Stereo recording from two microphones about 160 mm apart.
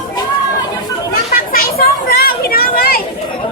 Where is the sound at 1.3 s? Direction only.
65° left (ahead or behind).